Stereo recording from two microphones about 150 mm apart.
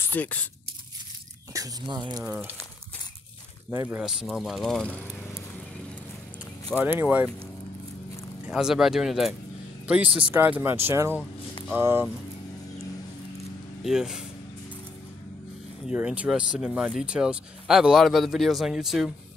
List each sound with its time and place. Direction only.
0.0 s speech: 10° left (ahead or behind)
1.5 s speech: 25° right (ahead or behind)
2.2 s speech: 10° right (ahead or behind)
3.7 s speech: 15° right (ahead or behind)
4.0 s speech: centre (ahead or behind)
6.8 s speech: 10° right (ahead or behind)
8.5 s speech: 5° right (ahead or behind)
13.8 s speech: 5° right (ahead or behind)
15.9 s speech: 10° right (ahead or behind)